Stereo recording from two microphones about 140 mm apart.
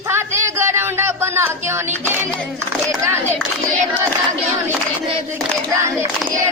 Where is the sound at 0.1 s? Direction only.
20° right (ahead or behind).